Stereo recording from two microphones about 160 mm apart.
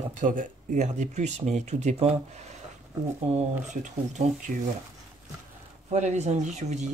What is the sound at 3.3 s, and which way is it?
Speech, 50° right (ahead or behind).